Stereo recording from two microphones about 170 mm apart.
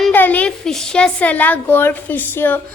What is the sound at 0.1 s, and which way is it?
A woman's voice, 10° left (ahead or behind).